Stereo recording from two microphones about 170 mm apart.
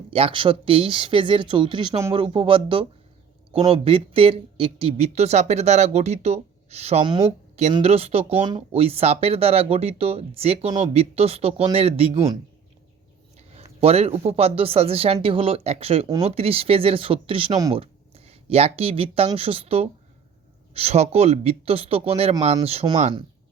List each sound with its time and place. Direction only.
0.1 s speech: 30° right (ahead or behind)
13.5 s a sound: 35° right (ahead or behind)
14.3 s speech: 35° right (ahead or behind)